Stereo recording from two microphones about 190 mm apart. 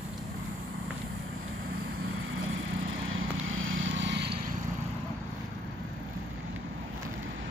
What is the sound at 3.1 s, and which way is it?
Vehicle, 90° right.